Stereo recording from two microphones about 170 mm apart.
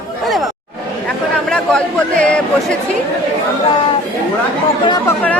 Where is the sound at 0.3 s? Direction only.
Centre (ahead or behind).